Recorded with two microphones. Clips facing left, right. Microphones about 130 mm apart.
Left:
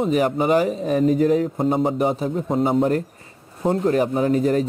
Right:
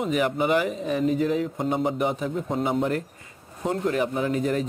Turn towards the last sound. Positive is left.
turn(degrees=40)  # may be behind; listen again after turning